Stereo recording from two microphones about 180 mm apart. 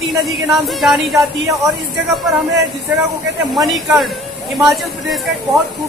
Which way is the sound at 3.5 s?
Centre (ahead or behind).